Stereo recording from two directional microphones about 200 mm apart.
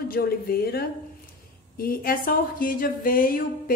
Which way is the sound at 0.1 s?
50° left (ahead or behind).